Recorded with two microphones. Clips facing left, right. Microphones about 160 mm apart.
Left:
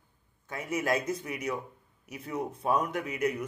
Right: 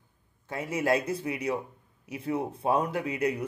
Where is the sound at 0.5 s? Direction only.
30° right (ahead or behind).